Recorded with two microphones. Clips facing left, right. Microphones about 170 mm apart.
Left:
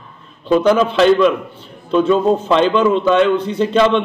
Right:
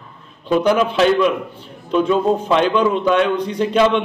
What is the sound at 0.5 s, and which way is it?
A man's voice, 10° right (ahead or behind).